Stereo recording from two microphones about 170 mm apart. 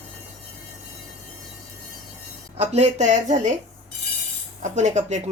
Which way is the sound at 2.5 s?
40° right (ahead or behind).